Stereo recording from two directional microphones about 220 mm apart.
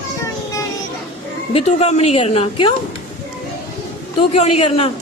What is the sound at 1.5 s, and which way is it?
A woman's voice, 30° left (ahead or behind).